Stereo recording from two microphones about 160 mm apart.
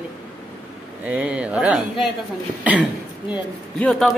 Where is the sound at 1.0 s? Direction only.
10° right (ahead or behind).